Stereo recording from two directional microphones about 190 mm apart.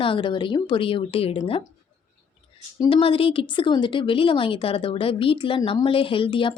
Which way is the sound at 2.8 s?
25° left (ahead or behind).